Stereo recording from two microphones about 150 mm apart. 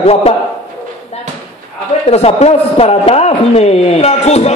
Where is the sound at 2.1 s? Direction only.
45° left (ahead or behind).